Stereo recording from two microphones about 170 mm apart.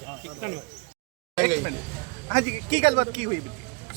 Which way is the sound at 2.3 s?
45° right (ahead or behind).